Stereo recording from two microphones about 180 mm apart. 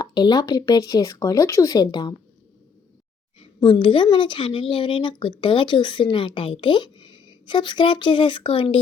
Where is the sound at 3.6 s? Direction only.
25° left (ahead or behind).